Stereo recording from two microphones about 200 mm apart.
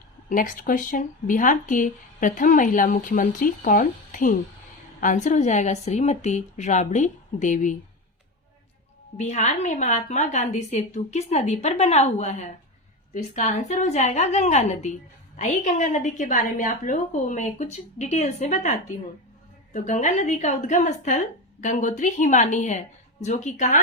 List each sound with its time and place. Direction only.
0.3 s speech: 40° left (ahead or behind)
9.1 s speech: 35° left (ahead or behind)